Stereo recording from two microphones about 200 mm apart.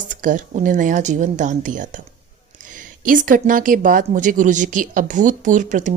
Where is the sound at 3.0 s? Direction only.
45° right (ahead or behind).